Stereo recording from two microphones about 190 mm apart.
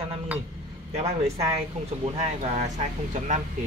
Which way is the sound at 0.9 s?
35° right (ahead or behind).